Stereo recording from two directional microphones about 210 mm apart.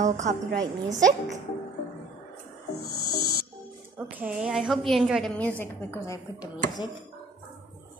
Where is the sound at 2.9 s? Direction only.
90° left.